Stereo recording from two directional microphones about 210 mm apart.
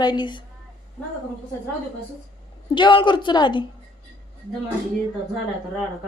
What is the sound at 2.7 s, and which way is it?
Speech, 20° left (ahead or behind).